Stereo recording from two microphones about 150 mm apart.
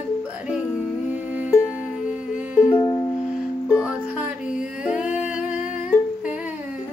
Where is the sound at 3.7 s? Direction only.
5° right (ahead or behind).